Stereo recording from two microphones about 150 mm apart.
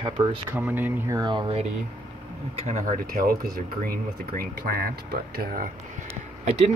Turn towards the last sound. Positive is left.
turn(degrees=-45)  # may be behind; listen again after turning